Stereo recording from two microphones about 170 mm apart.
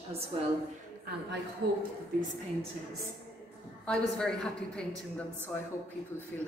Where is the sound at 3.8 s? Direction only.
5° left (ahead or behind).